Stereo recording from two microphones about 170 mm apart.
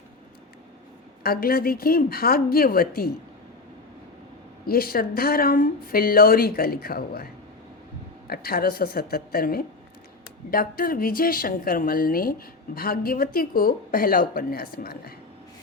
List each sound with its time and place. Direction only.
1.2 s speech: 60° left (ahead or behind)
4.6 s speech: 60° left (ahead or behind)
8.3 s speech: 60° left (ahead or behind)